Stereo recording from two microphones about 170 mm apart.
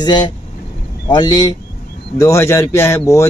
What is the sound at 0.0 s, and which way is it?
Speech, 25° left (ahead or behind).